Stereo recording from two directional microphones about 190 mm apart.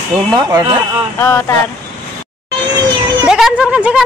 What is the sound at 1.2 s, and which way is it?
Speech, 15° left (ahead or behind).